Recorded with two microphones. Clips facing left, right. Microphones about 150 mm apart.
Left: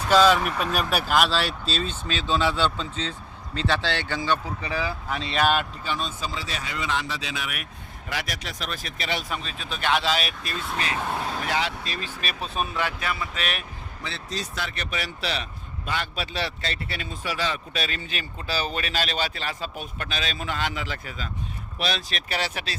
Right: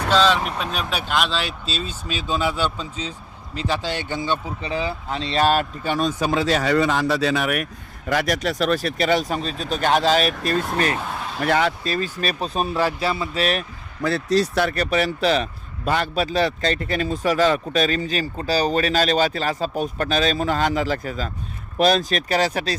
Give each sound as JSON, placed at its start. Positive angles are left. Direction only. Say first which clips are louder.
{"t": 0.1, "sound": "speech", "louder": "left 1 dB", "side_deg": 10}
{"t": 5.8, "sound": "speech", "louder": "right 8 dB", "side_deg": -60}
{"t": 7.0, "sound": "a man's voice", "louder": "right 12 dB", "side_deg": -45}
{"t": 14.5, "sound": "a man's voice", "louder": "right 12 dB", "side_deg": -50}